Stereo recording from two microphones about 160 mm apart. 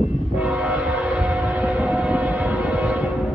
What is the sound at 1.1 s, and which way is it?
Civil defense siren, 5° right (ahead or behind).